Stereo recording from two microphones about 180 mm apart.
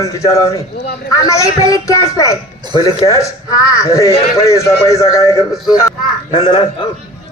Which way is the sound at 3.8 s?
20° left (ahead or behind).